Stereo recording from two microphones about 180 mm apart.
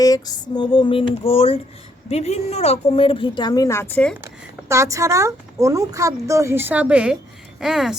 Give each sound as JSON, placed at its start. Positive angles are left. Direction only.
{"t": 0.0, "sound": "a woman's voice", "side_deg": 20}
{"t": 4.7, "sound": "a woman's voice", "side_deg": -15}